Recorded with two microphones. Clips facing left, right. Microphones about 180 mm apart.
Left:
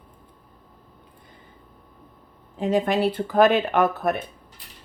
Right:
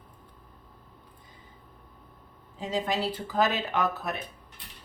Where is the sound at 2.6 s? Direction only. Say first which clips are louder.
Left 8 dB; 60° left (ahead or behind).